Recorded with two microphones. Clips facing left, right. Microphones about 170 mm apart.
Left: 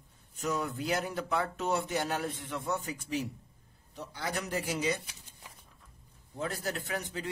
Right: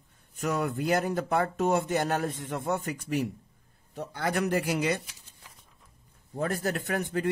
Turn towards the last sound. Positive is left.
turn(degrees=-55)  # may be behind; listen again after turning